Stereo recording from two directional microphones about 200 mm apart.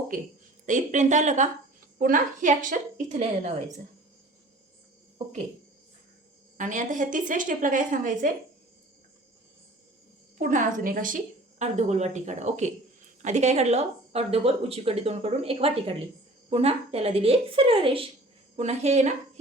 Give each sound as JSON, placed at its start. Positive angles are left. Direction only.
{"t": 0.6, "sound": "speech", "side_deg": -40}
{"t": 6.6, "sound": "speech", "side_deg": -40}
{"t": 10.3, "sound": "a woman's voice", "side_deg": -40}